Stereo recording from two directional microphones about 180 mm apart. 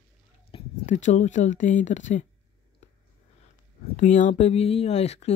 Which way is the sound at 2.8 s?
40° left (ahead or behind).